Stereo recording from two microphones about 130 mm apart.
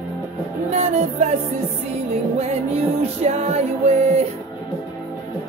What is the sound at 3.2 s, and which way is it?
Music, 55° right (ahead or behind).